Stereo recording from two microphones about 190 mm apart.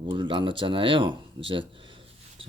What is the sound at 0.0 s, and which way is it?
Speech, 25° right (ahead or behind).